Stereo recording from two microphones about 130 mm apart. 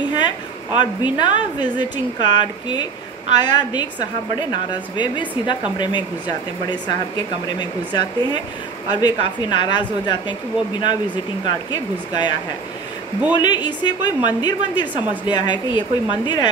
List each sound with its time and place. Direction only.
0.0 s a sound: 35° left (ahead or behind)
0.7 s a woman's voice: 35° left (ahead or behind)
11.4 s a woman's voice: 35° left (ahead or behind)